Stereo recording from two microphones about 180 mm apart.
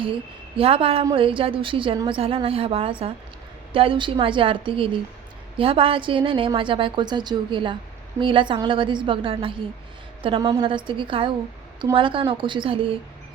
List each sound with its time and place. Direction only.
0.0 s a woman's voice: 30° right (ahead or behind)